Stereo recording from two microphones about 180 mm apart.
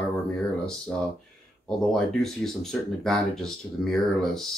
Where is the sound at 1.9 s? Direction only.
Centre (ahead or behind).